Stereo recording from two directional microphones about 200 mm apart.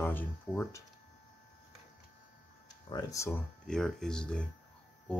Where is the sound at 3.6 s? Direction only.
5° left (ahead or behind).